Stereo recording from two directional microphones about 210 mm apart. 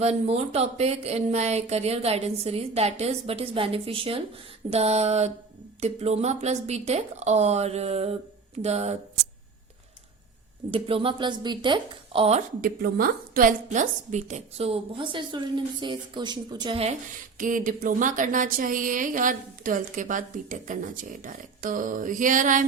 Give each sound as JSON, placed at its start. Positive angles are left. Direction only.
{"t": 0.0, "sound": "a woman's voice", "side_deg": -30}
{"t": 10.7, "sound": "a woman's voice", "side_deg": -25}
{"t": 12.6, "sound": "a woman's voice", "side_deg": -45}
{"t": 17.3, "sound": "speech", "side_deg": -40}